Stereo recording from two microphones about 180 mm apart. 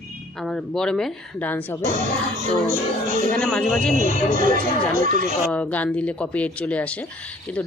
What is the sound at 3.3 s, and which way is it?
Speech, 5° left (ahead or behind).